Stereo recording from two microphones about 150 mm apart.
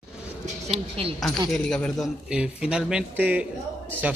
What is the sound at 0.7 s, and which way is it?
Speech, 40° right (ahead or behind).